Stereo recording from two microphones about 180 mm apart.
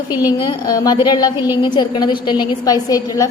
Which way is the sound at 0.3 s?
20° left (ahead or behind).